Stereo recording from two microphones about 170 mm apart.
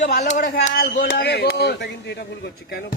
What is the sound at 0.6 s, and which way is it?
Speech, 60° left (ahead or behind).